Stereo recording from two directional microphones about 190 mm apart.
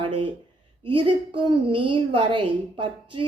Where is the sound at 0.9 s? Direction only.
25° right (ahead or behind).